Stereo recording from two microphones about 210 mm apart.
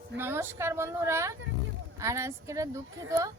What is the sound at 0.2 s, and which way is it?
Speech, 10° right (ahead or behind).